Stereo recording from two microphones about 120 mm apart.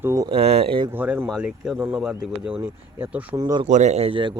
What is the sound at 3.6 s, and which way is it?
Speech, 80° right.